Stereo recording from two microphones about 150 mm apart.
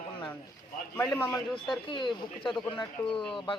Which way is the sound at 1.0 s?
20° left (ahead or behind).